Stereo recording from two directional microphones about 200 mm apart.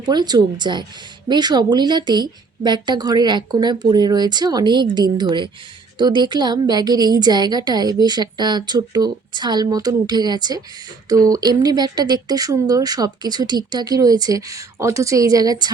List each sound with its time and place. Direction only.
0.0 s a woman's voice: 20° right (ahead or behind)